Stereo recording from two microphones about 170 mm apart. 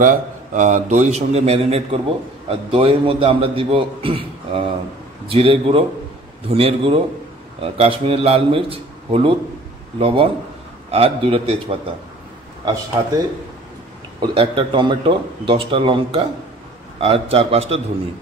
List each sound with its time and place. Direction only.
0.0 s a man's voice: 50° right (ahead or behind); by 11.9 s 30° right (ahead or behind)
14.2 s a man's voice: 30° right (ahead or behind)